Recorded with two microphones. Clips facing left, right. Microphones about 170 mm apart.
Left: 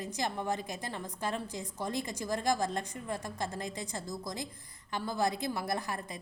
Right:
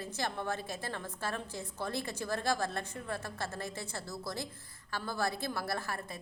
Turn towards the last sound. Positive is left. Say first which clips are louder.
# left 2 dB
turn(degrees=15)  # may be behind; listen again after turning